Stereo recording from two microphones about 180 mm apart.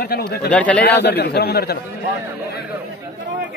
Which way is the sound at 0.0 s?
60° left (ahead or behind).